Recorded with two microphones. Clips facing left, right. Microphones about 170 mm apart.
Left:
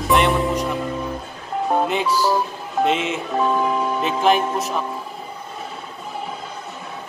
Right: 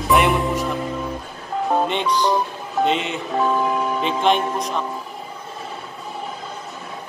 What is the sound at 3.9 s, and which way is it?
Speech, 5° left (ahead or behind).